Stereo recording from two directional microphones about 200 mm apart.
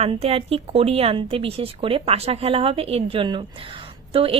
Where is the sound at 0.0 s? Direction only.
30° right (ahead or behind).